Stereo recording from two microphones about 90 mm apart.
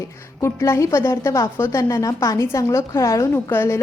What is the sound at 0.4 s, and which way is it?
A woman's voice, 30° left (ahead or behind).